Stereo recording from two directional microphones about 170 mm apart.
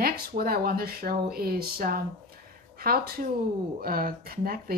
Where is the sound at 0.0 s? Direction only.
60° right (ahead or behind).